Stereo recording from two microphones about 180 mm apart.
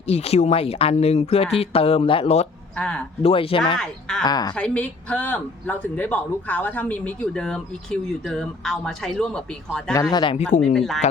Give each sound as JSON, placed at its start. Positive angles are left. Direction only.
{"t": 0.1, "sound": "speech", "side_deg": 35}
{"t": 2.7, "sound": "speech", "side_deg": 5}
{"t": 3.2, "sound": "speech", "side_deg": 30}
{"t": 4.5, "sound": "a man's voice", "side_deg": 5}
{"t": 9.9, "sound": "speech", "side_deg": 20}
{"t": 10.3, "sound": "speech", "side_deg": 40}
{"t": 10.6, "sound": "speech", "side_deg": 0}